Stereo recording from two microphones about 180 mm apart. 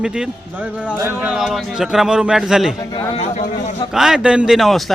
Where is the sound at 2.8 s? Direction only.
30° left (ahead or behind).